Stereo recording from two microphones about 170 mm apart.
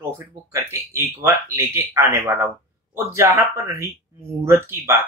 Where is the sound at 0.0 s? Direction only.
20° right (ahead or behind).